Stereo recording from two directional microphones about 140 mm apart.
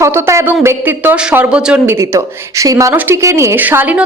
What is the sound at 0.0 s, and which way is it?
A woman's voice, 20° right (ahead or behind).